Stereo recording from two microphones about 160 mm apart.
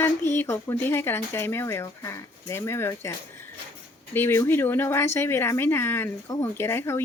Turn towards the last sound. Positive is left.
turn(degrees=15)  # may be behind; listen again after turning